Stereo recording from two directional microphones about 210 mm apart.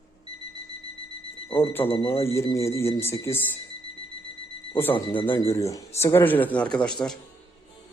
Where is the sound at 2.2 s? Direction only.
15° left (ahead or behind).